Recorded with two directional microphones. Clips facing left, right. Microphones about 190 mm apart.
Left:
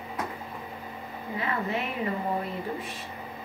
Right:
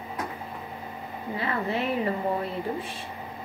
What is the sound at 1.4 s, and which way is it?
Speech, 35° right (ahead or behind).